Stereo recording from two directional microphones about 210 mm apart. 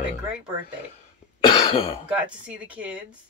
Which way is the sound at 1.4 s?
20° left (ahead or behind).